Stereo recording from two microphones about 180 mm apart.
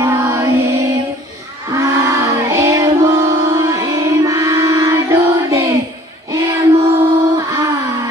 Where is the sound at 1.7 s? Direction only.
20° right (ahead or behind).